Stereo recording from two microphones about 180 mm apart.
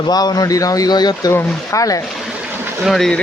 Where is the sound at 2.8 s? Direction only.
Centre (ahead or behind).